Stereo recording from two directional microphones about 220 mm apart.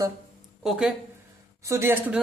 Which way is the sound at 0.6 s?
5° right (ahead or behind).